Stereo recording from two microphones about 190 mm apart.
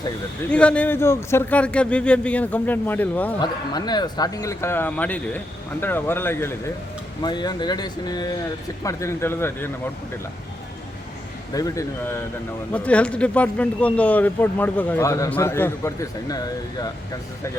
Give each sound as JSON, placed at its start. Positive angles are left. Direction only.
{"t": 0.5, "sound": "speech", "side_deg": 5}
{"t": 3.3, "sound": "speech", "side_deg": 20}
{"t": 7.2, "sound": "speech", "side_deg": 20}
{"t": 11.5, "sound": "speech", "side_deg": 15}